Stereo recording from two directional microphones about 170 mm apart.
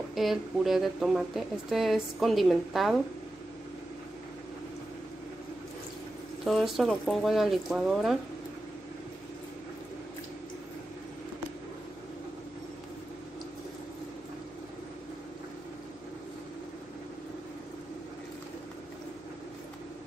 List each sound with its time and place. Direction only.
0.1 s a woman's voice: centre (ahead or behind)
6.4 s a woman's voice: centre (ahead or behind)